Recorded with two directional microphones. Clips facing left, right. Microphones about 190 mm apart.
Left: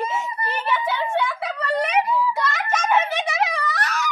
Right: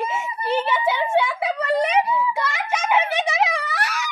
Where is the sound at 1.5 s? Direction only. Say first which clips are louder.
Right 3 dB; 20° right (ahead or behind).